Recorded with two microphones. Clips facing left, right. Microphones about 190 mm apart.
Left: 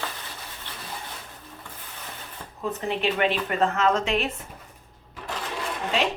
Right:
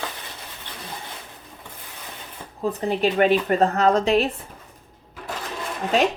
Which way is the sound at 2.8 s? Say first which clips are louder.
Right 5 dB; 40° right (ahead or behind).